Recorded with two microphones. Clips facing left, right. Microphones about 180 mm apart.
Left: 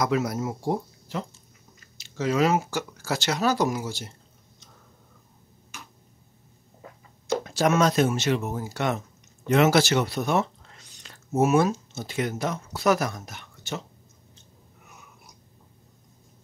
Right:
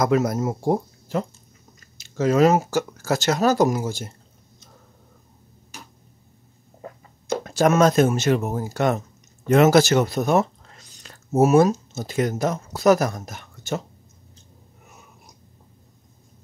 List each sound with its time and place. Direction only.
0.0 s speech: 45° right (ahead or behind)
7.4 s speech: 50° right (ahead or behind)